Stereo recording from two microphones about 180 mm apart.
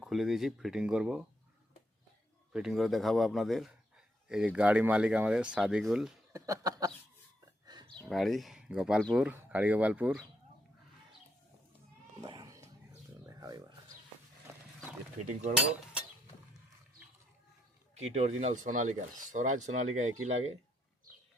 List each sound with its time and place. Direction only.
0.0 s a man's voice: centre (ahead or behind)
2.5 s a man's voice: 5° right (ahead or behind)
6.3 s a sound: 20° right (ahead or behind)
8.0 s a man's voice: centre (ahead or behind)
12.2 s cat: 20° right (ahead or behind)
13.4 s a sound: 20° right (ahead or behind)
17.9 s speech: 35° right (ahead or behind)